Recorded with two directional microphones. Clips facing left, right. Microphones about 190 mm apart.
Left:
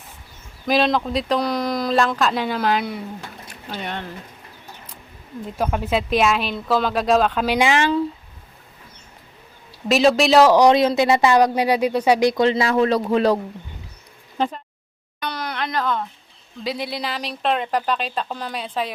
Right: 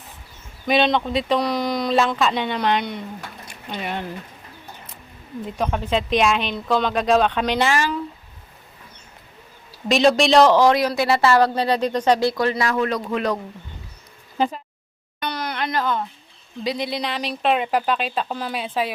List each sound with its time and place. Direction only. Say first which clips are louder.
0.6 s speech: even; centre (ahead or behind)
5.5 s speech: left 1 dB; 5° left (ahead or behind)
7.8 s speech: left 4 dB; 30° left (ahead or behind)
9.9 s speech: left 1 dB; centre (ahead or behind); by 13.4 s 30° left (ahead or behind)
14.3 s speech: right 1 dB; 5° right (ahead or behind)
15.2 s a sound: right 1 dB; centre (ahead or behind)
16.6 s speech: right 1 dB; 5° left (ahead or behind)